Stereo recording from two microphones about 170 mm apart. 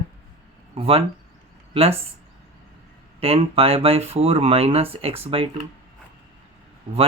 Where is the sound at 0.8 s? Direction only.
35° right (ahead or behind).